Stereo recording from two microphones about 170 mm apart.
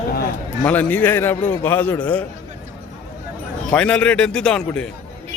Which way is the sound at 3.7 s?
5° left (ahead or behind).